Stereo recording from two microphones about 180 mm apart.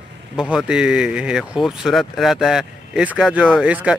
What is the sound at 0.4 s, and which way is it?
Speech, 5° right (ahead or behind).